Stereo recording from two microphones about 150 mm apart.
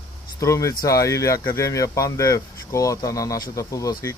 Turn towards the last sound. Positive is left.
turn(degrees=20)  # may be behind; listen again after turning